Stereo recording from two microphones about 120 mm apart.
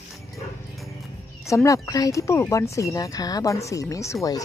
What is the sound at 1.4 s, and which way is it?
Speech, 25° left (ahead or behind).